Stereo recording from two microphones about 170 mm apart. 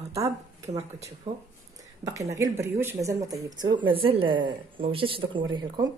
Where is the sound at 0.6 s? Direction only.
20° right (ahead or behind).